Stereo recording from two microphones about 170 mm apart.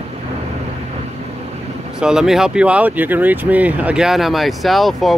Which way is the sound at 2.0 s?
5° right (ahead or behind).